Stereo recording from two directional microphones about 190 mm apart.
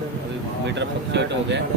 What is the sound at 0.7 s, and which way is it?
Speech, 65° right (ahead or behind).